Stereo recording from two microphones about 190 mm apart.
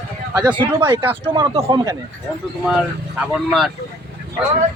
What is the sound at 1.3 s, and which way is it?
Speech, 30° right (ahead or behind).